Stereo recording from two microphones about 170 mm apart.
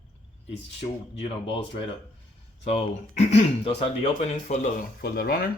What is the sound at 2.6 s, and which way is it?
Speech, 40° left (ahead or behind).